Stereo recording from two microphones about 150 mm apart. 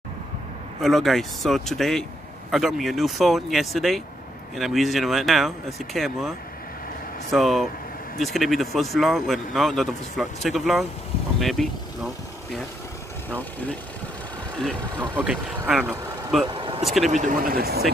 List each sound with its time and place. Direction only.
0.7 s speech: centre (ahead or behind)
15.2 s speech: 10° right (ahead or behind)
16.4 s speech: 35° right (ahead or behind)
16.8 s speech: centre (ahead or behind)
17.1 s speech: 60° right (ahead or behind); by 17.8 s 90° right